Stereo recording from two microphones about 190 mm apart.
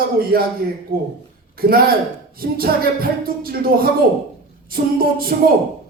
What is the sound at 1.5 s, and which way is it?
A man's voice, 50° right (ahead or behind).